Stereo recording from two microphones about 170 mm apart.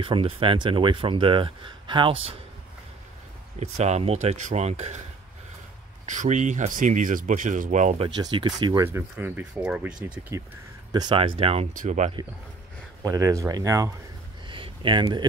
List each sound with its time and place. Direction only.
0.0 s speech: 30° right (ahead or behind)
3.5 s speech: 40° right (ahead or behind)
6.0 s speech: 45° right (ahead or behind)
8.2 s speech: 25° right (ahead or behind)
8.8 s speech: 15° right (ahead or behind)
10.3 s speech: 15° right (ahead or behind); by 11.7 s 35° right (ahead or behind)
11.7 s speech: 50° right (ahead or behind)
13.0 s speech: 20° right (ahead or behind)
14.5 s a sound: 30° right (ahead or behind)